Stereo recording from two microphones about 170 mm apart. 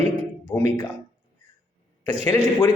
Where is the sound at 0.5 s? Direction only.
10° left (ahead or behind).